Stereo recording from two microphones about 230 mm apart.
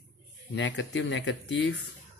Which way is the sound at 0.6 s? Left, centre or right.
Left.